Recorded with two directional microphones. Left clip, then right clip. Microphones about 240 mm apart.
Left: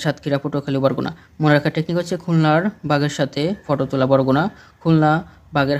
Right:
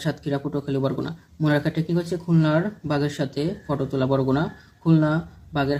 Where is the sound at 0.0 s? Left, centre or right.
Left.